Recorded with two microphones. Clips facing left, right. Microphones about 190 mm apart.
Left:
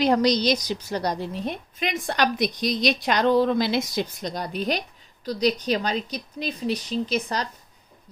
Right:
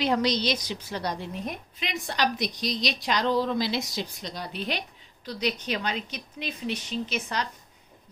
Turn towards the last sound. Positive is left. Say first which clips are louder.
# left 5 dB
turn(degrees=35)  # may be behind; listen again after turning